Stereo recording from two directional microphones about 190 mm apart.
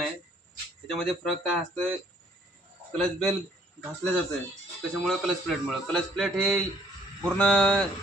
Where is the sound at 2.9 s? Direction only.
Centre (ahead or behind).